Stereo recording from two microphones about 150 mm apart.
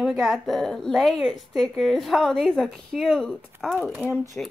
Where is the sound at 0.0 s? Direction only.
Centre (ahead or behind).